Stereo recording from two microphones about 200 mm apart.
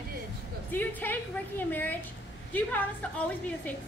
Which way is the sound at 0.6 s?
10° left (ahead or behind).